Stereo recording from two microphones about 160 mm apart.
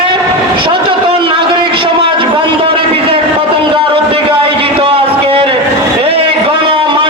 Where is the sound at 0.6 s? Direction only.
35° right (ahead or behind).